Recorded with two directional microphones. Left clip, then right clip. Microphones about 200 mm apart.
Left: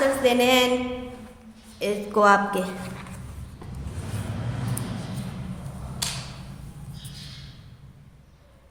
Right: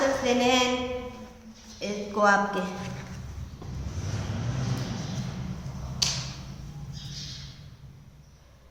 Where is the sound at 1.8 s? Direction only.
55° left (ahead or behind).